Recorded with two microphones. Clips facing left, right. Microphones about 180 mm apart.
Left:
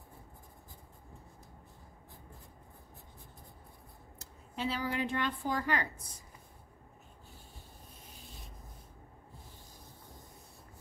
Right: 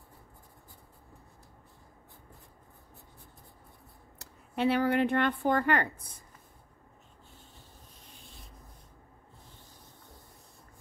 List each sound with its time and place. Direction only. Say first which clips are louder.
4.2 s speech: right 8 dB; 65° right (ahead or behind)